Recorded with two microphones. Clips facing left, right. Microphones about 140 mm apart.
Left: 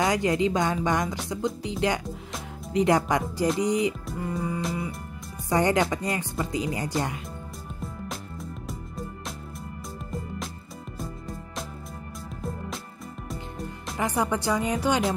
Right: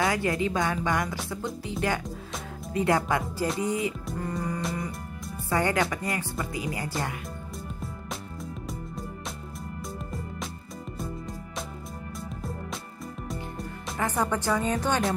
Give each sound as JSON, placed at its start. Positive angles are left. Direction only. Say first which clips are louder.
{"t": 0.0, "sound": "speech", "louder": "left 3 dB", "side_deg": 20}
{"t": 4.3, "sound": "music", "louder": "left 2 dB", "side_deg": 5}
{"t": 5.5, "sound": "speech", "louder": "left 3 dB", "side_deg": 20}
{"t": 7.8, "sound": "music", "louder": "left 1 dB", "side_deg": 0}
{"t": 13.9, "sound": "speech", "louder": "left 1 dB", "side_deg": 10}